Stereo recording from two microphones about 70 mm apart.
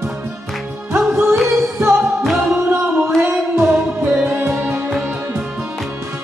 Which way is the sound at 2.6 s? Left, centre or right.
Right.